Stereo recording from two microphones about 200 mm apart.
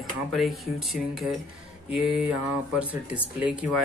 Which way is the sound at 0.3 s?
Centre (ahead or behind).